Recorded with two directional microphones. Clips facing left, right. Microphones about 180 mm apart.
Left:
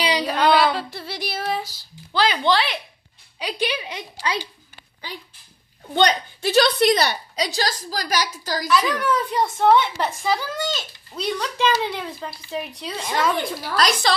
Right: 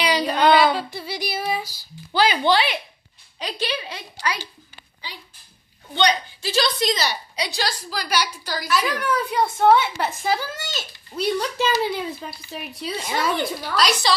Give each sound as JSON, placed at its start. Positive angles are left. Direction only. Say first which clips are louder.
{"t": 0.3, "sound": "female singing", "louder": "right 2 dB", "side_deg": 0}
{"t": 2.1, "sound": "a woman's voice", "louder": "right 1 dB", "side_deg": -5}
{"t": 3.3, "sound": "a woman's voice", "louder": "left 2 dB", "side_deg": 15}
{"t": 5.0, "sound": "a woman's voice", "louder": "left 4 dB", "side_deg": 50}
{"t": 7.3, "sound": "a woman's voice", "louder": "left 2 dB", "side_deg": 40}
{"t": 8.6, "sound": "a woman's voice", "louder": "left 2 dB", "side_deg": -5}
{"t": 13.7, "sound": "a woman's voice", "louder": "left 1 dB", "side_deg": 50}